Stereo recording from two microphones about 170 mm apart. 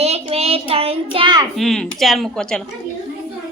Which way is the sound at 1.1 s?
30° right (ahead or behind).